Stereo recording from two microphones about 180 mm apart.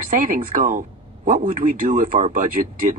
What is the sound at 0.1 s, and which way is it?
Speech, 50° right (ahead or behind).